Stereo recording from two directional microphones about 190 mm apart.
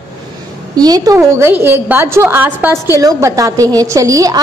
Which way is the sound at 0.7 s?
20° right (ahead or behind).